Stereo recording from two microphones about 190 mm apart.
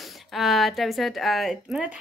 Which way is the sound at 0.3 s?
Centre (ahead or behind).